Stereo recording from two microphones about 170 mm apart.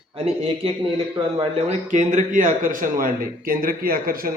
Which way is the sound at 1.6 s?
45° right (ahead or behind).